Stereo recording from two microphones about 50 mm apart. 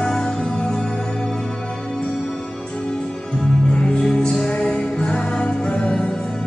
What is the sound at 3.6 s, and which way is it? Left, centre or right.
Music, centre.